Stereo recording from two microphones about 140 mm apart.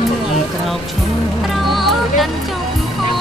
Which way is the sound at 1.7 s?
Centre (ahead or behind).